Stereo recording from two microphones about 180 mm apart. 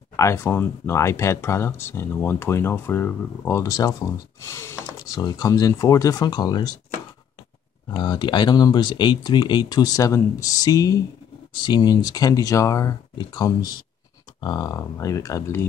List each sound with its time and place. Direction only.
0.1 s speech: 15° left (ahead or behind)
7.9 s speech: 25° left (ahead or behind)